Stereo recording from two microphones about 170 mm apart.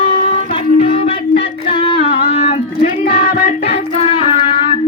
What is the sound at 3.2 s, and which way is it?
Music, 50° left (ahead or behind).